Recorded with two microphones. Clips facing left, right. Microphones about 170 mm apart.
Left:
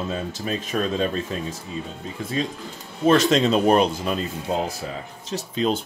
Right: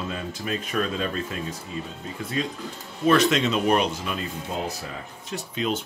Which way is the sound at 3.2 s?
35° left (ahead or behind).